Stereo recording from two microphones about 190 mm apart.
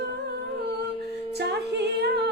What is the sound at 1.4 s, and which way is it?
Music, 60° right (ahead or behind).